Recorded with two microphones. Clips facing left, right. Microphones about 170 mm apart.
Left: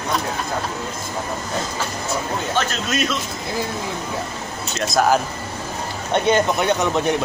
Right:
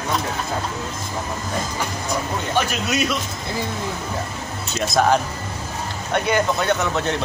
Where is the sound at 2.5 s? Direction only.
10° right (ahead or behind).